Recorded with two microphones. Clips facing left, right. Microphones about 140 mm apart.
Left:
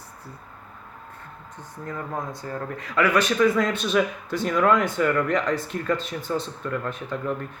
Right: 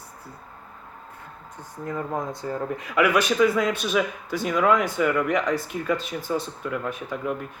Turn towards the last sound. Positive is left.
turn(degrees=-10)  # may be behind; listen again after turning